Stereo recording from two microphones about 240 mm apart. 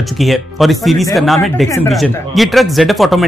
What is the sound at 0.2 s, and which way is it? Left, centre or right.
Speech, centre.